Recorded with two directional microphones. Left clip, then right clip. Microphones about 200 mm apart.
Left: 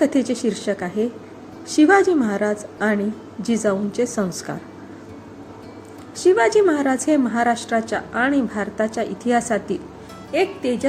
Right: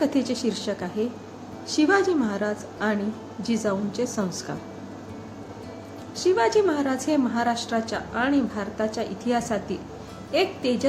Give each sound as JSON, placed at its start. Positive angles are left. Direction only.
{"t": 0.0, "sound": "a woman's voice", "side_deg": 20}
{"t": 6.1, "sound": "a woman's voice", "side_deg": 25}
{"t": 10.3, "sound": "speech", "side_deg": 5}